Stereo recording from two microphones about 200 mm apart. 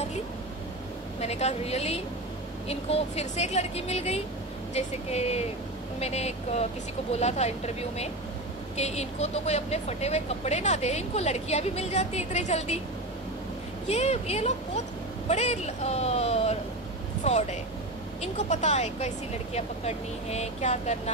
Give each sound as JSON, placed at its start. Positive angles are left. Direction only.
{"t": 1.2, "sound": "speech", "side_deg": 30}
{"t": 13.8, "sound": "speech", "side_deg": 35}